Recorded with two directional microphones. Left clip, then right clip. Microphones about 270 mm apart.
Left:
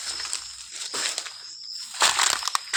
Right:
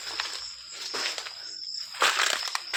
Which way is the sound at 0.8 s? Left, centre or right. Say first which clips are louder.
Left 2 dB; left.